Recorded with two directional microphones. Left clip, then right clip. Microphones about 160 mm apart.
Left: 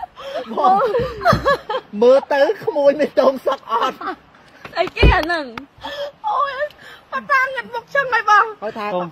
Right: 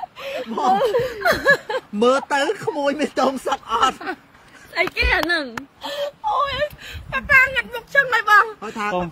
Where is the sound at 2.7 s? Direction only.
55° right (ahead or behind).